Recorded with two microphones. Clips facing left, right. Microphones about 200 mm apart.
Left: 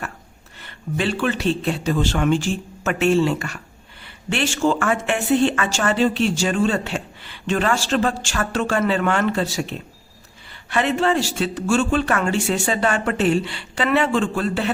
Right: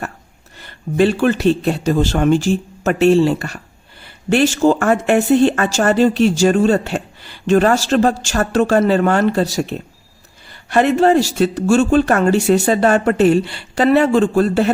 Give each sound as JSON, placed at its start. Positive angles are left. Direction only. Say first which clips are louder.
{"t": 0.6, "sound": "speech", "louder": "right 9 dB", "side_deg": -45}